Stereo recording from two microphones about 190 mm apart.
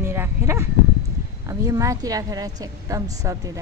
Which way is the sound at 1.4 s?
15° right (ahead or behind).